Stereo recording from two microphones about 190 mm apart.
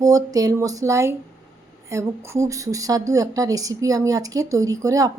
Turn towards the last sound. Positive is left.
turn(degrees=-15)  # may be behind; listen again after turning